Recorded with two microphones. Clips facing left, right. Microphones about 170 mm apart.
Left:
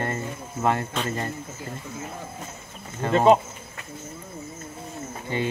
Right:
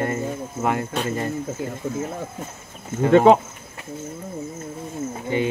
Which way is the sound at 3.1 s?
75° right (ahead or behind).